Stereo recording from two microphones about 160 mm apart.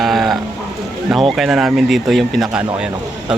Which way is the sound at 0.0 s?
Centre (ahead or behind).